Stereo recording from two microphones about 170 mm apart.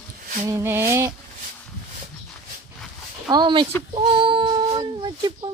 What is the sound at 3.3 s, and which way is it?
Speech, 25° right (ahead or behind).